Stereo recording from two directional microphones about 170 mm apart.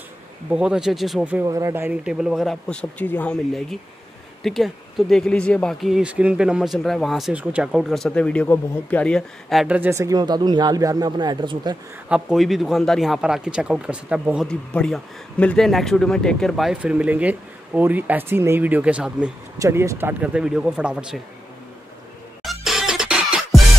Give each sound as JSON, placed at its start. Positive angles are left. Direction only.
{"t": 0.5, "sound": "speech", "side_deg": -5}
{"t": 1.5, "sound": "speech", "side_deg": -15}
{"t": 12.1, "sound": "speech", "side_deg": -5}
{"t": 14.5, "sound": "speech", "side_deg": 5}
{"t": 19.6, "sound": "speech", "side_deg": -15}
{"t": 22.4, "sound": "music", "side_deg": 0}